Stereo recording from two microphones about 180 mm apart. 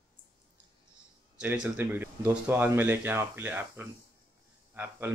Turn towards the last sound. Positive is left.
turn(degrees=-10)  # may be behind; listen again after turning